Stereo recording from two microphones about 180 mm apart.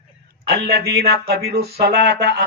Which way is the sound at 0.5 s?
65° right (ahead or behind).